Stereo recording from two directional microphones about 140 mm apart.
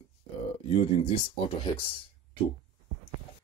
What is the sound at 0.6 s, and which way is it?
Speech, 40° left (ahead or behind).